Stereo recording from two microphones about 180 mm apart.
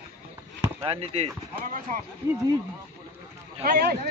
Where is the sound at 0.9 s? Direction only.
35° right (ahead or behind).